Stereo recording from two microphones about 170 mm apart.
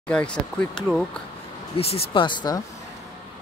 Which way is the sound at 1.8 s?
35° left (ahead or behind).